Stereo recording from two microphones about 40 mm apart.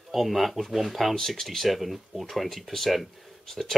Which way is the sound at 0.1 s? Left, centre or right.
Centre.